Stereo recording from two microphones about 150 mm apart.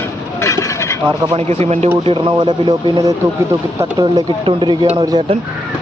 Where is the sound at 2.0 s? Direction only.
35° right (ahead or behind).